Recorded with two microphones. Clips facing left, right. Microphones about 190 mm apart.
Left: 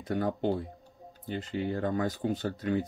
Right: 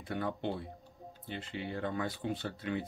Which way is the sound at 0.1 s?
40° left (ahead or behind).